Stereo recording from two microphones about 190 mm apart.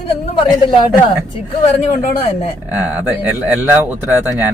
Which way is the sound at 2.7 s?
10° right (ahead or behind).